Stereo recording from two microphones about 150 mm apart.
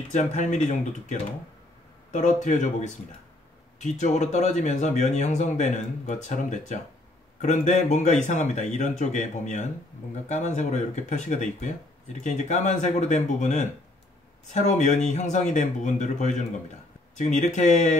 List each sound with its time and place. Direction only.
0.1 s speech: 55° left (ahead or behind)